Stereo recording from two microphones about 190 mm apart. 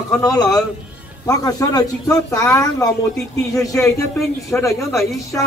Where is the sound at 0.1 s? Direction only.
20° left (ahead or behind).